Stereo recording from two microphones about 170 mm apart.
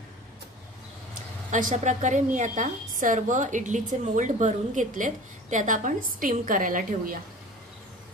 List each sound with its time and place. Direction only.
1.5 s a woman's voice: 50° right (ahead or behind)